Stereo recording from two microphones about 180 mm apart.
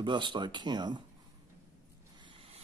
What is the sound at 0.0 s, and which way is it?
Speech, 25° right (ahead or behind).